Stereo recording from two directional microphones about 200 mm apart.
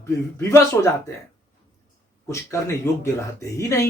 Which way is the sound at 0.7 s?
5° left (ahead or behind).